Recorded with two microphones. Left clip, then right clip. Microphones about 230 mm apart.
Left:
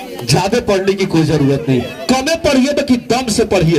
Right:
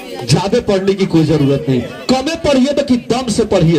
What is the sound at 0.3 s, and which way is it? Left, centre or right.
A man's voice, left.